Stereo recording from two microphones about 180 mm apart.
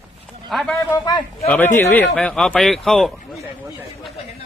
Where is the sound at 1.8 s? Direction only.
10° left (ahead or behind).